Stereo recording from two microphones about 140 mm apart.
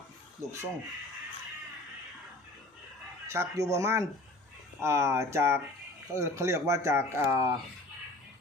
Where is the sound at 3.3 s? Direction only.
20° right (ahead or behind).